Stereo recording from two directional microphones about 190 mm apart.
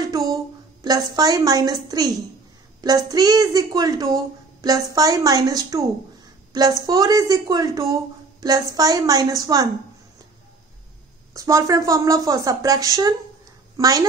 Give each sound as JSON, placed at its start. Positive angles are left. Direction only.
{"t": 0.0, "sound": "a sound", "side_deg": -20}
{"t": 0.8, "sound": "a woman's voice", "side_deg": -20}
{"t": 11.3, "sound": "a woman's voice", "side_deg": -15}